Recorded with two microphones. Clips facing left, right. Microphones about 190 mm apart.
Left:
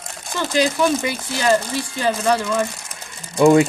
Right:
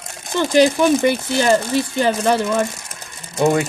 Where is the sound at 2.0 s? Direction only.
20° right (ahead or behind).